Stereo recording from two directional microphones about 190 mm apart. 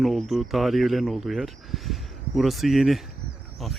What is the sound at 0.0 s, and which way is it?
Speech, centre (ahead or behind).